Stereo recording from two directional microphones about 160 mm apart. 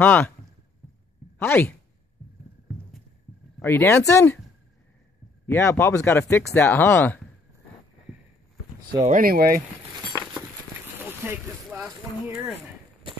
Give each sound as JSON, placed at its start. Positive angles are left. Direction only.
{"t": 0.0, "sound": "speech", "side_deg": 10}
{"t": 1.4, "sound": "speech", "side_deg": 10}
{"t": 3.5, "sound": "speech", "side_deg": 15}
{"t": 5.5, "sound": "speech", "side_deg": 15}
{"t": 9.0, "sound": "speech", "side_deg": -60}
{"t": 11.1, "sound": "boat", "side_deg": -10}